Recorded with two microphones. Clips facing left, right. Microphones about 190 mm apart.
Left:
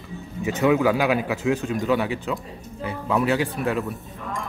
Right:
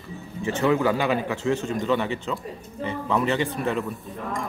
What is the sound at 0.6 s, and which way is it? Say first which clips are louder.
Speech: left 2 dB; 10° left (ahead or behind).